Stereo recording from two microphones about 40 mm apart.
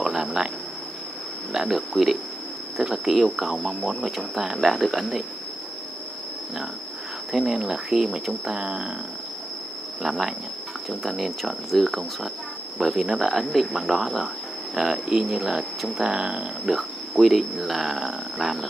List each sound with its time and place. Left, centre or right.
0.0 s a sound: centre
1.5 s speech: centre
7.5 s speech: centre
10.0 s speech: centre